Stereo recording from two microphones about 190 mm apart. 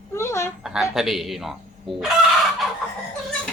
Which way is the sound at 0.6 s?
Centre (ahead or behind).